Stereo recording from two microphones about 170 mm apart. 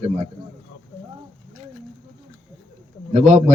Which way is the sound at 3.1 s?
45° right (ahead or behind).